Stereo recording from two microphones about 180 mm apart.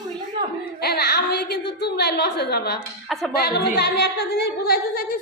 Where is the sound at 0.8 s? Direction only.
60° left (ahead or behind).